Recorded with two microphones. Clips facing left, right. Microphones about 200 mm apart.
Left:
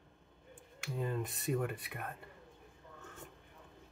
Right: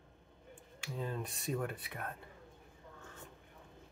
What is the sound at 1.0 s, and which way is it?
Speech, 5° left (ahead or behind).